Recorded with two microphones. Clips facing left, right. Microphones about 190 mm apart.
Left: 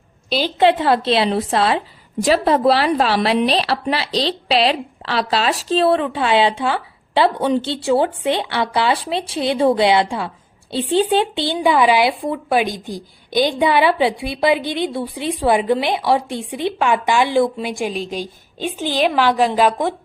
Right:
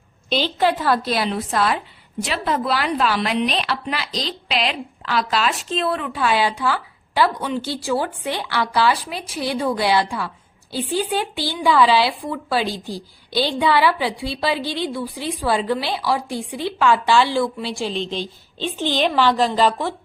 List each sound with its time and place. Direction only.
0.6 s speech: 25° left (ahead or behind)